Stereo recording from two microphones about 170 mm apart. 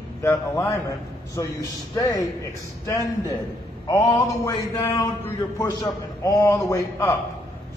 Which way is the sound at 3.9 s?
20° left (ahead or behind).